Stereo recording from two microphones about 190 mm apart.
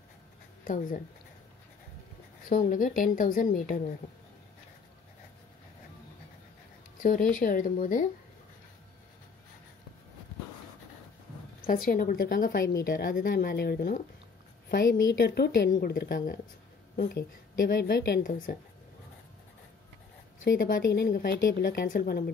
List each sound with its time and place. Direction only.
0.7 s a woman's voice: 45° left (ahead or behind)
2.5 s a woman's voice: 45° left (ahead or behind)
7.0 s a woman's voice: 45° left (ahead or behind)
11.6 s a woman's voice: 50° left (ahead or behind)
20.4 s a woman's voice: 50° left (ahead or behind)